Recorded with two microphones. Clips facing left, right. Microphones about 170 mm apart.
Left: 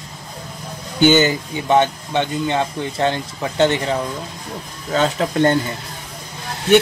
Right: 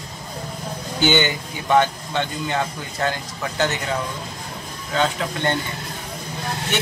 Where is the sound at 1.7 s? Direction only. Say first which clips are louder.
Left 2 dB; 20° left (ahead or behind).